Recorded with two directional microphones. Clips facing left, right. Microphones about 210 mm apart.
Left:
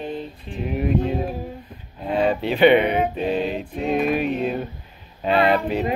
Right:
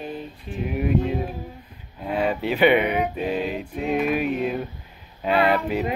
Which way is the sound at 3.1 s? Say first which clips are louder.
Left 2 dB; 10° right (ahead or behind).